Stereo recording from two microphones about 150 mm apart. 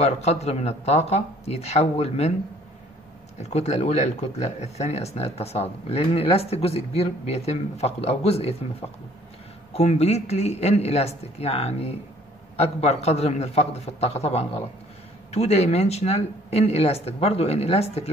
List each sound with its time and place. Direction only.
0.0 s speech: 45° left (ahead or behind)
3.3 s speech: 50° left (ahead or behind)
9.7 s speech: 45° left (ahead or behind)